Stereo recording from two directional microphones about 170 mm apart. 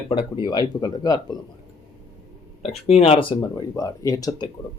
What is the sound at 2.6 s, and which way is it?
Speech, 40° left (ahead or behind).